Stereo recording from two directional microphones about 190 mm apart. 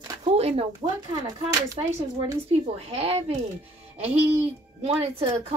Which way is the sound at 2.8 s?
30° right (ahead or behind).